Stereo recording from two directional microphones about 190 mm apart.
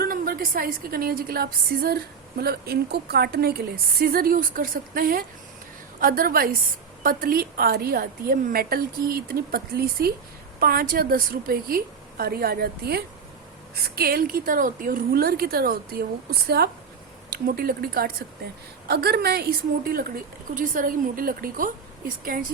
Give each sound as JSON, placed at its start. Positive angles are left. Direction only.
{"t": 0.0, "sound": "a woman's voice", "side_deg": -50}